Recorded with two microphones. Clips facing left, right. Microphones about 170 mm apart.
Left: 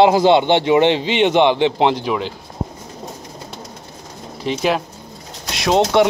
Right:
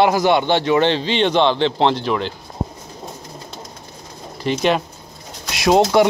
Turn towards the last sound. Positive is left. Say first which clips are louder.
# right 1 dB
turn(degrees=-5)  # may be behind; listen again after turning